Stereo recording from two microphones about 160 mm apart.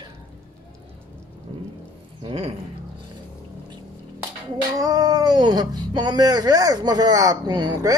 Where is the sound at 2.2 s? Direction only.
35° right (ahead or behind).